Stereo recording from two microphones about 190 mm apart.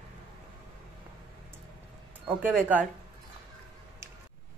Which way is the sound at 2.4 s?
10° right (ahead or behind).